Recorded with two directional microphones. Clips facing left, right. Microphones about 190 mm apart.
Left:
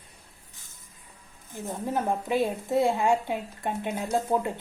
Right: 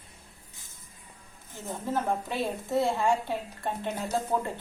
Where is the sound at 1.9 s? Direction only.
15° left (ahead or behind).